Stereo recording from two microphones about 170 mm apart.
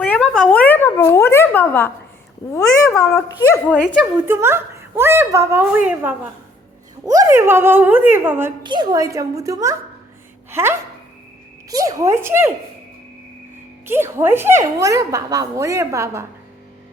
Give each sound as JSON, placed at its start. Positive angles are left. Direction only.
{"t": 0.0, "sound": "a sound", "side_deg": 10}
{"t": 2.5, "sound": "speech", "side_deg": 15}
{"t": 4.3, "sound": "a woman's voice", "side_deg": -15}
{"t": 8.6, "sound": "a woman's voice", "side_deg": -25}
{"t": 13.8, "sound": "a woman's voice", "side_deg": -15}